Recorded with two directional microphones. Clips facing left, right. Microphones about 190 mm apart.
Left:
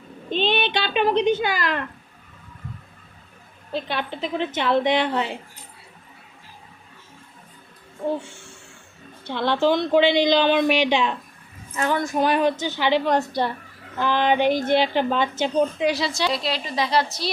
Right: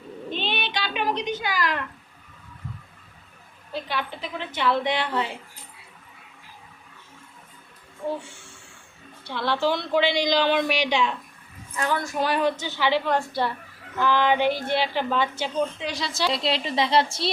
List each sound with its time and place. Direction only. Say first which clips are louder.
0.3 s a sound: left 8 dB; 25° left (ahead or behind)
3.7 s a woman's voice: left 3 dB; 25° left (ahead or behind)
9.3 s a woman's voice: left 4 dB; 20° left (ahead or behind)
15.9 s a woman's voice: left 4 dB; 5° left (ahead or behind)
16.3 s a woman's voice: right 1 dB; 25° right (ahead or behind)